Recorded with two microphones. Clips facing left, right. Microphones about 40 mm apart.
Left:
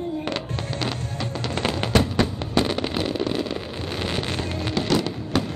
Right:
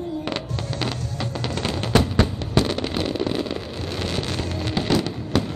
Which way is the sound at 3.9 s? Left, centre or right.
Centre.